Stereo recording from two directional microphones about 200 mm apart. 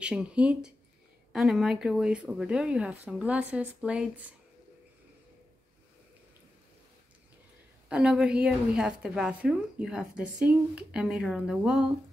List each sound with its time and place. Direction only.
0.0 s a woman's voice: 5° right (ahead or behind)
7.9 s a woman's voice: 5° right (ahead or behind)